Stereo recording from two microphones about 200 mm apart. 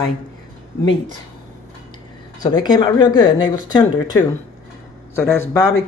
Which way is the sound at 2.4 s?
20° left (ahead or behind).